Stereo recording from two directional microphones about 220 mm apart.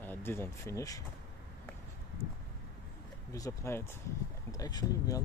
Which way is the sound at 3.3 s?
15° left (ahead or behind).